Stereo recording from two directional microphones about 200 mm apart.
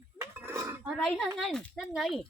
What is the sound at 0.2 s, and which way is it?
Dishes, 15° right (ahead or behind).